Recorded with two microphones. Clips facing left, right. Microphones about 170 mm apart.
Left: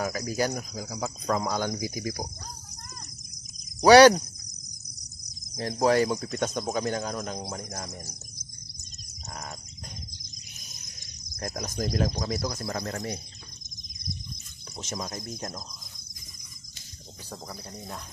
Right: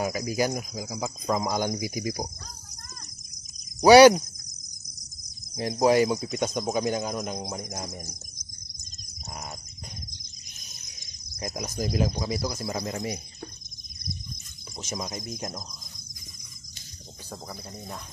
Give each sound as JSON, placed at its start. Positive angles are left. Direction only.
{"t": 0.0, "sound": "speech", "side_deg": -10}
{"t": 1.4, "sound": "speech", "side_deg": -15}
{"t": 3.8, "sound": "speech", "side_deg": -10}
{"t": 5.6, "sound": "speech", "side_deg": -15}
{"t": 11.4, "sound": "speech", "side_deg": -5}
{"t": 15.0, "sound": "speech", "side_deg": -15}